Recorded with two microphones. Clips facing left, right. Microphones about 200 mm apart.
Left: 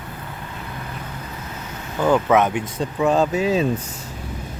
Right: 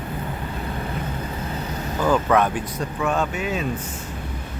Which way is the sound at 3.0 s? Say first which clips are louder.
Left 6 dB; 30° left (ahead or behind).